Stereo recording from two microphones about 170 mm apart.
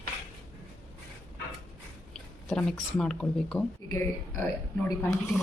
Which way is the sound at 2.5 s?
5° left (ahead or behind).